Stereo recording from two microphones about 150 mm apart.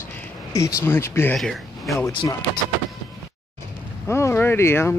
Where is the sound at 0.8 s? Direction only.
15° left (ahead or behind).